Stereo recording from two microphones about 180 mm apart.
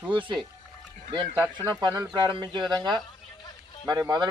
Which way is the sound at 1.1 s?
25° right (ahead or behind).